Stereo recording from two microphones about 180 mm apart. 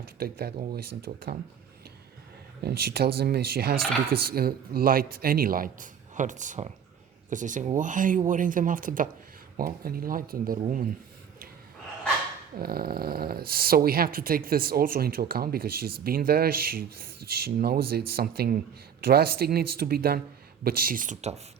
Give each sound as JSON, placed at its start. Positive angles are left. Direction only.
{"t": 0.2, "sound": "speech", "side_deg": -55}
{"t": 2.6, "sound": "a man's voice", "side_deg": -60}
{"t": 12.5, "sound": "a man's voice", "side_deg": -55}